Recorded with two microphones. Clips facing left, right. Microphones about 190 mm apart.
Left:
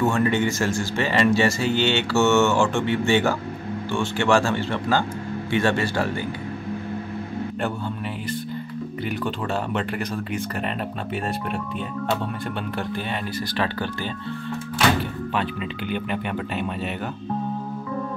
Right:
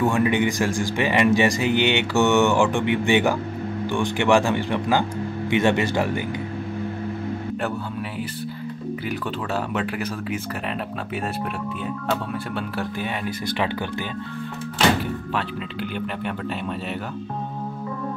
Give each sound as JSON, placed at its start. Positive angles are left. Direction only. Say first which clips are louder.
{"t": 0.0, "sound": "speech", "louder": "right 1 dB", "side_deg": -15}
{"t": 9.8, "sound": "speech", "louder": "even", "side_deg": -5}